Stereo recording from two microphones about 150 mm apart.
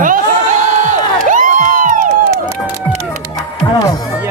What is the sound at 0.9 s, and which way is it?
Crowd, 55° right (ahead or behind).